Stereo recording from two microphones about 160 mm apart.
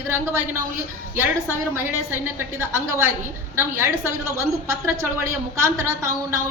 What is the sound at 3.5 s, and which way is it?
A woman's voice, 15° right (ahead or behind).